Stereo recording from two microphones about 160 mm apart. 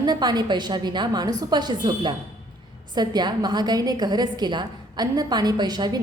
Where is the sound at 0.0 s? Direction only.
25° right (ahead or behind).